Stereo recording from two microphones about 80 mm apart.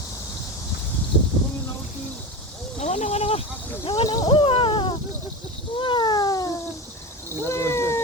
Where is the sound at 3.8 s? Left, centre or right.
Left.